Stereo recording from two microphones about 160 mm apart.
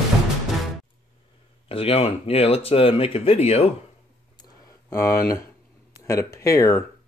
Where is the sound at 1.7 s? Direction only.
35° left (ahead or behind).